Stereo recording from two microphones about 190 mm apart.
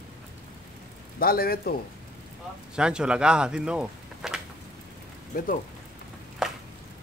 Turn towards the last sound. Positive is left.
turn(degrees=-5)  # may be behind; listen again after turning